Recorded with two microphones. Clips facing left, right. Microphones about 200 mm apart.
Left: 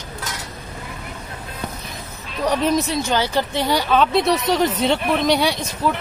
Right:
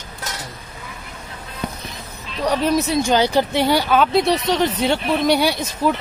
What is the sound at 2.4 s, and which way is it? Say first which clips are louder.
Speech: even; centre (ahead or behind).